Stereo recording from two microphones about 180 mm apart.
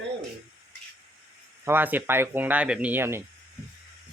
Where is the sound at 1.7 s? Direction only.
10° right (ahead or behind).